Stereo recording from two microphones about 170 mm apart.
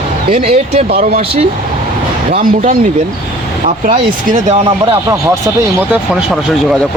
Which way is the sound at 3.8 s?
55° right (ahead or behind).